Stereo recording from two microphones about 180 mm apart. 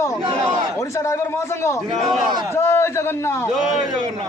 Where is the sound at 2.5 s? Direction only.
15° left (ahead or behind).